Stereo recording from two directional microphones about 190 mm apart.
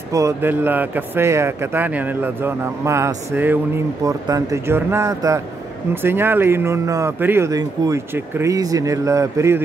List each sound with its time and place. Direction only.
0.1 s speech: 15° right (ahead or behind)